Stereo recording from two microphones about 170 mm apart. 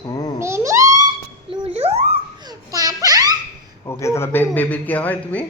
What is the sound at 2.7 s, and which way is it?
Babbling, 20° right (ahead or behind).